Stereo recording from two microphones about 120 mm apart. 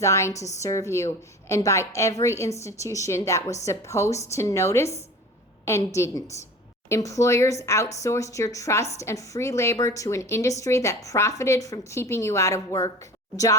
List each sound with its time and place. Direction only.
0.0 s a woman's voice: 25° left (ahead or behind)